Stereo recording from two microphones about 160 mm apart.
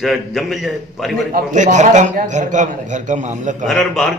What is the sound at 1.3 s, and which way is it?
A man's voice, 50° right (ahead or behind).